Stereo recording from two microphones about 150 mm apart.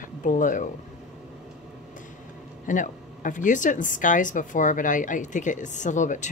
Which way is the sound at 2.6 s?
60° left (ahead or behind).